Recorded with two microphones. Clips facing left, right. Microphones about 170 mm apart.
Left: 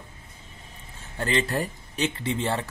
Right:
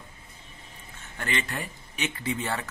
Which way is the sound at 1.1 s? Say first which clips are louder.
Left 6 dB; 35° left (ahead or behind).